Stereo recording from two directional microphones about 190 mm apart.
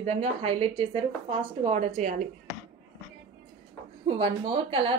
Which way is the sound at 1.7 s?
40° right (ahead or behind).